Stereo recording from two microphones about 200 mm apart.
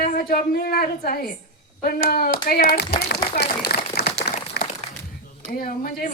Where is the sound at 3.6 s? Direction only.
50° left (ahead or behind).